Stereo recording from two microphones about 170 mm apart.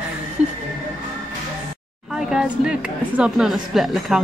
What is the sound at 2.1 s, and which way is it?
A woman's voice, 5° right (ahead or behind).